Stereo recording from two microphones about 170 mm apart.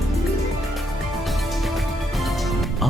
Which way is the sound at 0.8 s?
Centre (ahead or behind).